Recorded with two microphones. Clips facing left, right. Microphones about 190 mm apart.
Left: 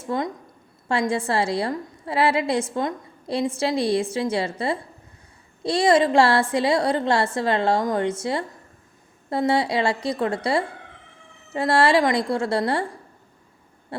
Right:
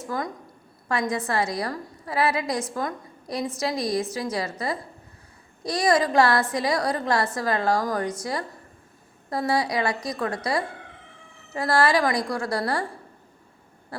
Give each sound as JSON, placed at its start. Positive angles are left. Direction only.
{"t": 0.0, "sound": "a woman's voice", "side_deg": 25}